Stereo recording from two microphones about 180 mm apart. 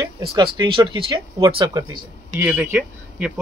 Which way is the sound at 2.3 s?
10° right (ahead or behind).